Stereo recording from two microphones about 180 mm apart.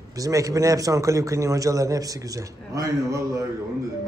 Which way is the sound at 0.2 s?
20° right (ahead or behind).